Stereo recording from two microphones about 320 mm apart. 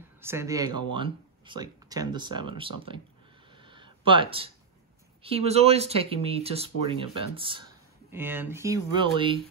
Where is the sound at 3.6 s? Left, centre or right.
Centre.